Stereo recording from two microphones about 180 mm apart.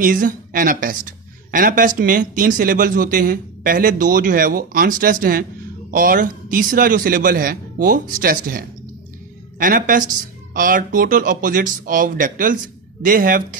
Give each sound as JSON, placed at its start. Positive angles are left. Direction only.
{"t": 0.0, "sound": "speech", "side_deg": -50}